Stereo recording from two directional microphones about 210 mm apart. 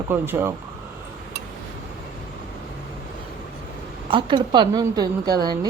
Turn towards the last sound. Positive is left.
turn(degrees=-20)  # may be behind; listen again after turning